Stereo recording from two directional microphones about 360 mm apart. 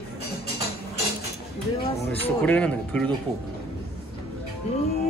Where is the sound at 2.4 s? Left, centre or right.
Centre.